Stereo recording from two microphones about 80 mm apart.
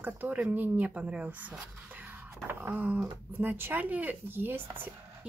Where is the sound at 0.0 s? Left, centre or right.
Right.